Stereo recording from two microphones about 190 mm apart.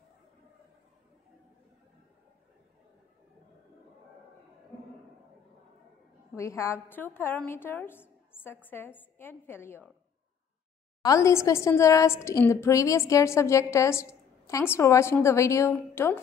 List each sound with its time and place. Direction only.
6.3 s a woman's voice: 15° left (ahead or behind)
11.0 s a woman's voice: 15° left (ahead or behind)